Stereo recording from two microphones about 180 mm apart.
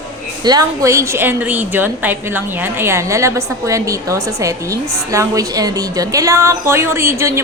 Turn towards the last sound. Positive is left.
turn(degrees=-15)  # may be behind; listen again after turning